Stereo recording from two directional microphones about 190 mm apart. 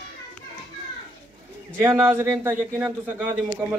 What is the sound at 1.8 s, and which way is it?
A man's voice, 15° right (ahead or behind).